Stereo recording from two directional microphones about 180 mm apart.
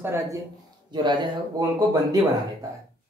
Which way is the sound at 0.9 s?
25° right (ahead or behind).